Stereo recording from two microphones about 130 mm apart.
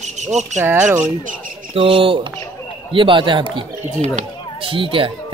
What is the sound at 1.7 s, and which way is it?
A man's voice, 45° right (ahead or behind).